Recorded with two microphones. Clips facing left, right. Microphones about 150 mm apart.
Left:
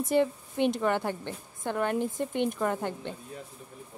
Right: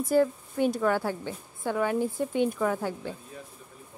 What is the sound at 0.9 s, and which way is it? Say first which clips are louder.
A woman's voice: right 1 dB; 5° right (ahead or behind).